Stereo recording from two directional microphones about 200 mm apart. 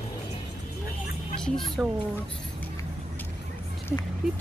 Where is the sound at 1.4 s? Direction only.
Centre (ahead or behind).